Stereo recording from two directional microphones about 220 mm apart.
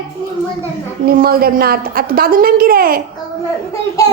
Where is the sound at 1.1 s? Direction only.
40° right (ahead or behind).